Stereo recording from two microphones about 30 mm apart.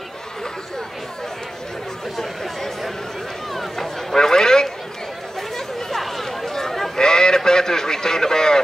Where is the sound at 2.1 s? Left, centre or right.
Centre.